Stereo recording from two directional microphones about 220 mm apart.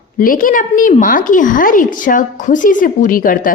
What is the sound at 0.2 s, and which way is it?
A woman's voice, 40° left (ahead or behind).